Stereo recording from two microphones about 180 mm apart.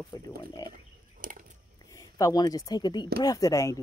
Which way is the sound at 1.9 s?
20° left (ahead or behind).